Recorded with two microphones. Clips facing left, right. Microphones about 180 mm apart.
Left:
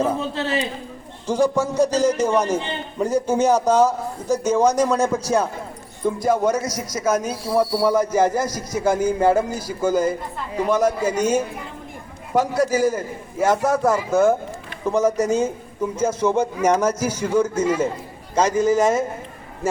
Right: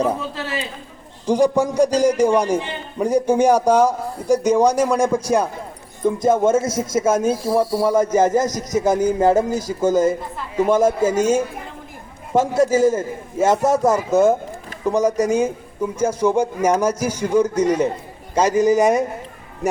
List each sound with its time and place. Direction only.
0.2 s a man's voice: 25° left (ahead or behind)
1.3 s a man's voice: 15° right (ahead or behind)
7.4 s speech: 50° right (ahead or behind)
8.1 s a man's voice: 20° right (ahead or behind)